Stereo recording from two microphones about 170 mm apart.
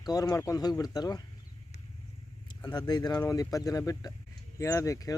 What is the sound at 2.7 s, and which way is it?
Speech, 25° left (ahead or behind).